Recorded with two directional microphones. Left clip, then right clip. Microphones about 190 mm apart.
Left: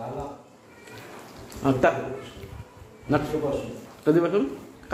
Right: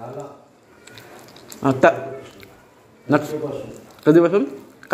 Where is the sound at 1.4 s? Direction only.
45° right (ahead or behind).